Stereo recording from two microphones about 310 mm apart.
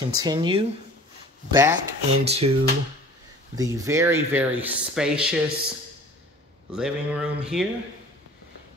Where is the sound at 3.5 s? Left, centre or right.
Centre.